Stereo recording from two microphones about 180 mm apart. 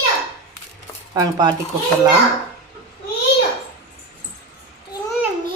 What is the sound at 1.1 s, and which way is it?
Speech, 20° right (ahead or behind).